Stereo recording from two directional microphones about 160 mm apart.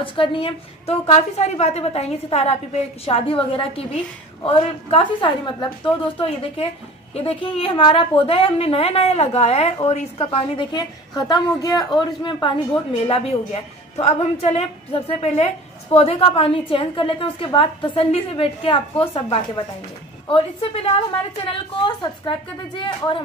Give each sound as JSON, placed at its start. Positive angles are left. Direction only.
{"t": 0.0, "sound": "a woman's voice", "side_deg": 35}
{"t": 20.2, "sound": "a woman's voice", "side_deg": 35}